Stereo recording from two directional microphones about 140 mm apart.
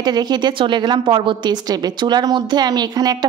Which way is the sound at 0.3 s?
35° right (ahead or behind).